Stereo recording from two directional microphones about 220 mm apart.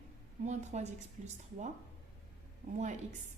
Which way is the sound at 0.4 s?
30° right (ahead or behind).